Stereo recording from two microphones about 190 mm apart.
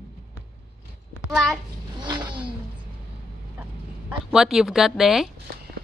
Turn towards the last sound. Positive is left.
turn(degrees=0)  # may be behind; listen again after turning